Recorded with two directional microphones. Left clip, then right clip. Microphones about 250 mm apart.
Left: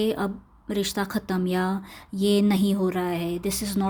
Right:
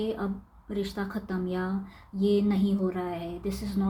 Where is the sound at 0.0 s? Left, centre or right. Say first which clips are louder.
Left 6 dB; left.